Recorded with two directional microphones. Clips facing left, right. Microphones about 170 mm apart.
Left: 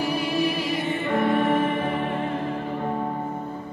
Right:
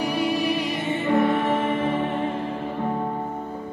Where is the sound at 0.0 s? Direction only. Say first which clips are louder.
Right 1 dB; centre (ahead or behind).